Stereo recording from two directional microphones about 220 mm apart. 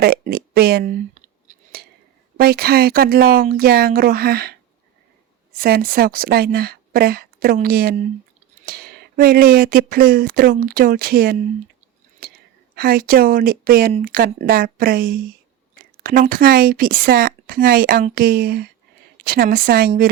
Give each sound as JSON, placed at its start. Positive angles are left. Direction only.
{"t": 0.0, "sound": "speech", "side_deg": -45}
{"t": 1.1, "sound": "a sound", "side_deg": -40}
{"t": 2.4, "sound": "speech", "side_deg": -45}
{"t": 5.5, "sound": "speech", "side_deg": -45}
{"t": 12.7, "sound": "speech", "side_deg": -45}